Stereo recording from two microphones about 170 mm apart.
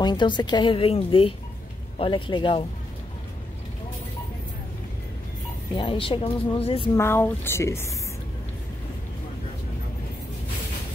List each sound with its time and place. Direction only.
0.0 s a woman's voice: 25° left (ahead or behind)
5.8 s speech: 30° left (ahead or behind)
7.0 s speech: 15° left (ahead or behind)